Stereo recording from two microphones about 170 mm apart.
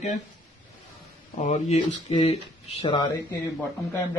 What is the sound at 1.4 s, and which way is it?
Speech, 45° left (ahead or behind).